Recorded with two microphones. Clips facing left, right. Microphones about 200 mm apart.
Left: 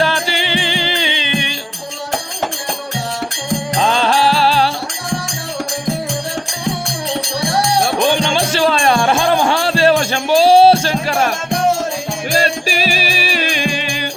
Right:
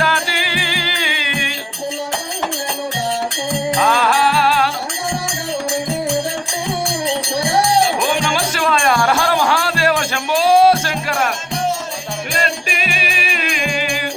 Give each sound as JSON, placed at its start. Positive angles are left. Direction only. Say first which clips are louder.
{"t": 0.0, "sound": "music", "louder": "left 3 dB", "side_deg": 25}
{"t": 3.8, "sound": "music", "louder": "left 4 dB", "side_deg": 25}
{"t": 8.2, "sound": "music", "louder": "left 4 dB", "side_deg": 30}
{"t": 12.3, "sound": "music", "louder": "left 6 dB", "side_deg": 35}